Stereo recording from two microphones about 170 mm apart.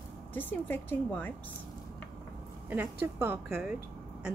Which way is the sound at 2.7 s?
10° right (ahead or behind).